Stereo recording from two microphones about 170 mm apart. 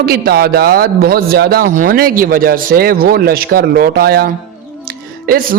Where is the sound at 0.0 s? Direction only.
65° right (ahead or behind).